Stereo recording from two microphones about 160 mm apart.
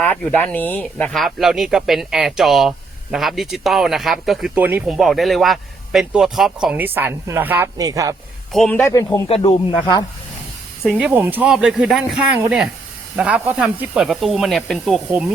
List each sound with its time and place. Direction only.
0.0 s speech: 10° left (ahead or behind); by 8.1 s 20° right (ahead or behind)
8.5 s speech: 5° left (ahead or behind)
8.8 s speech: 20° left (ahead or behind)
9.3 s speech: 35° left (ahead or behind)
10.9 s speech: 10° right (ahead or behind)